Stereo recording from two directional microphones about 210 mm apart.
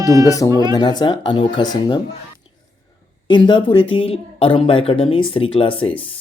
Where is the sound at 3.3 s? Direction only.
25° left (ahead or behind).